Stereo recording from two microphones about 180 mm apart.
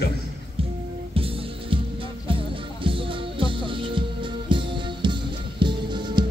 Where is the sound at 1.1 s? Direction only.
30° right (ahead or behind).